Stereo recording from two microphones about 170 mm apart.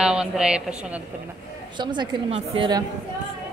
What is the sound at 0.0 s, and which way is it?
A woman's voice, 5° right (ahead or behind).